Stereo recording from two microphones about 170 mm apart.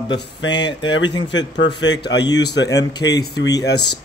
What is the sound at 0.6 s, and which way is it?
A man's voice, 90° left.